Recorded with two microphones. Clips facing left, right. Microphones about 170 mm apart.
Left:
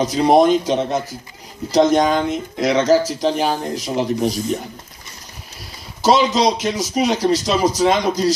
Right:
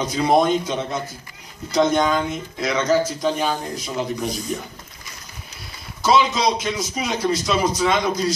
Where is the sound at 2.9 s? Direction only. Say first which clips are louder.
Left 4 dB; 85° left.